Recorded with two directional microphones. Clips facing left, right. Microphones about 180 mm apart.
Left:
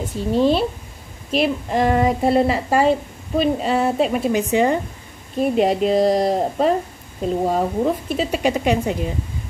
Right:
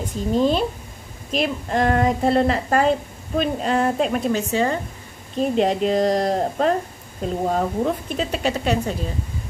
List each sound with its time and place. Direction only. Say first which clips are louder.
0.0 s a woman's voice: left 2 dB; 5° left (ahead or behind)
4.4 s speech: left 4 dB; 15° left (ahead or behind)
5.4 s a woman's voice: left 2 dB; 5° left (ahead or behind)